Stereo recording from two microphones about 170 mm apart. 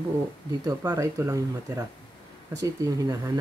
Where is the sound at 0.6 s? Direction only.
20° right (ahead or behind).